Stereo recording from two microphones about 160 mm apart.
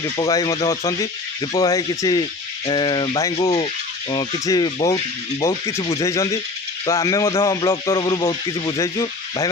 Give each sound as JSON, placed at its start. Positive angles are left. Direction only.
{"t": 0.3, "sound": "speech", "side_deg": 20}